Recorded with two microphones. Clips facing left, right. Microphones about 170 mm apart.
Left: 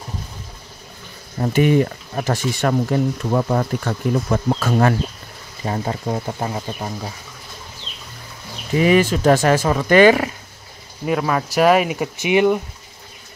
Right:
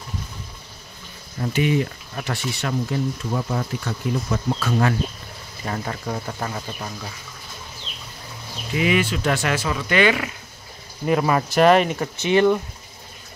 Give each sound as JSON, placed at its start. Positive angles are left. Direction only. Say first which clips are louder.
{"t": 1.4, "sound": "speech", "louder": "left 5 dB", "side_deg": 50}
{"t": 5.6, "sound": "speech", "louder": "left 5 dB", "side_deg": 25}
{"t": 8.7, "sound": "speech", "louder": "left 6 dB", "side_deg": 40}
{"t": 11.1, "sound": "speech", "louder": "even", "side_deg": 0}